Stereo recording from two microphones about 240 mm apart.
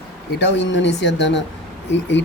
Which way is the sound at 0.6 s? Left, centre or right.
Left.